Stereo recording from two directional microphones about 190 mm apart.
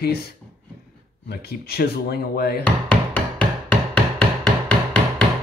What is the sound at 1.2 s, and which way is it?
Speech, 55° left (ahead or behind).